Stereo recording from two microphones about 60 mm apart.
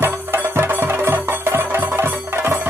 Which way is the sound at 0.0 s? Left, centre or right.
Right.